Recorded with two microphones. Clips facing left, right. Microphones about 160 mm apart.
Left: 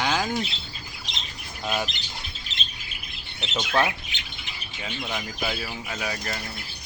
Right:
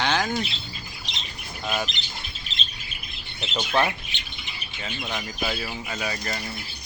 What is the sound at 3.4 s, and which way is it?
Speech, 10° right (ahead or behind).